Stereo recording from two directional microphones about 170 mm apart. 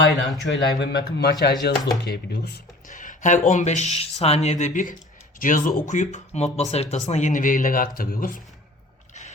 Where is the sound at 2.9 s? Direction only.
50° left (ahead or behind).